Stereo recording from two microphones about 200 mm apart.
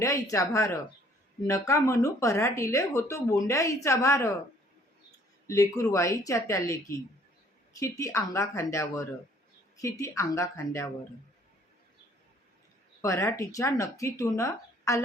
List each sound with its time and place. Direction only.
0.0 s speech: 15° left (ahead or behind)
5.5 s speech: 15° left (ahead or behind)
7.8 s speech: 15° left (ahead or behind)
13.0 s speech: 15° left (ahead or behind)